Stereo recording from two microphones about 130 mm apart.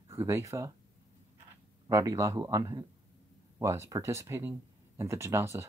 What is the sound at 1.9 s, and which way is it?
Speech, 25° right (ahead or behind).